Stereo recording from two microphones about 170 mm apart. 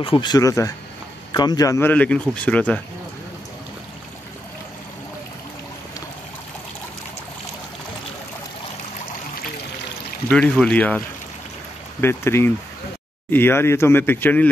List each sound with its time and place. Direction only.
0.0 s speech: 30° left (ahead or behind); by 2.8 s 10° left (ahead or behind)
10.3 s speech: 5° left (ahead or behind)
12.0 s speech: 15° left (ahead or behind)